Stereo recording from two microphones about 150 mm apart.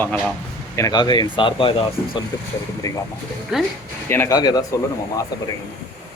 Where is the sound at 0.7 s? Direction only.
25° left (ahead or behind).